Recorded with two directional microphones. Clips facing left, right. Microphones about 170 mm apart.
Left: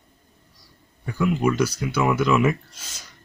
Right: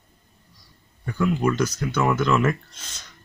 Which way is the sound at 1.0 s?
5° left (ahead or behind).